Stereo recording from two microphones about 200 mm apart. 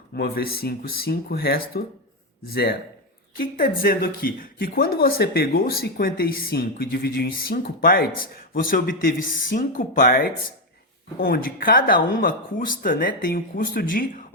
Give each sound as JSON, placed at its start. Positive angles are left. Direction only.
{"t": 0.2, "sound": "speech", "side_deg": 50}